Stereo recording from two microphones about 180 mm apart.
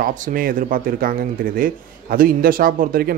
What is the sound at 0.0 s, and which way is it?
Speech, 50° right (ahead or behind).